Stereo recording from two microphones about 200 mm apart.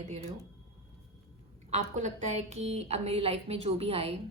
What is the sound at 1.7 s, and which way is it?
A woman's voice, 35° right (ahead or behind).